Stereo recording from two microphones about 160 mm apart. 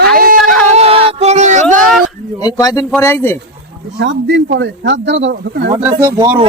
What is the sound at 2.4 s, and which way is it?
Speech, 20° left (ahead or behind).